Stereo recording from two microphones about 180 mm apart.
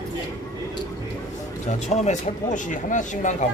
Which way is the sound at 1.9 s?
40° left (ahead or behind).